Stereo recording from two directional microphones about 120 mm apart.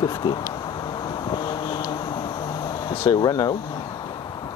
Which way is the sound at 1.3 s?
40° left (ahead or behind).